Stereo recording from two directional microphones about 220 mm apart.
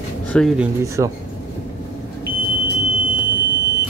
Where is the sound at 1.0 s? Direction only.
15° right (ahead or behind).